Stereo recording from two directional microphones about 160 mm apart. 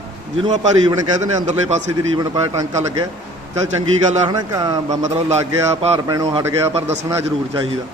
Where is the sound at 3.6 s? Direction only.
45° right (ahead or behind).